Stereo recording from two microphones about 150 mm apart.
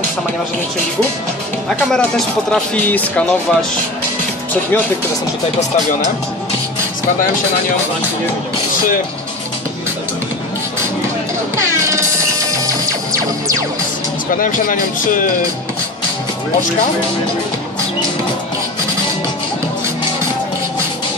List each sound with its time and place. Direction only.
1.9 s speech: 5° left (ahead or behind)
12.4 s music: 25° right (ahead or behind)
14.4 s speech: 65° left (ahead or behind)